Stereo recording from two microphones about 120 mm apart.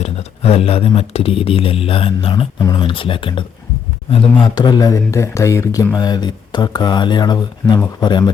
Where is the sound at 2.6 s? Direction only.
30° left (ahead or behind).